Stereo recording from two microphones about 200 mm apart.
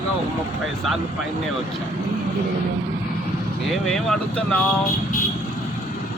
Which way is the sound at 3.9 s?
Centre (ahead or behind).